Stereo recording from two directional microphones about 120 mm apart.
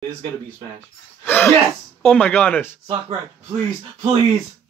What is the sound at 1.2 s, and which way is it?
Speech, 20° left (ahead or behind).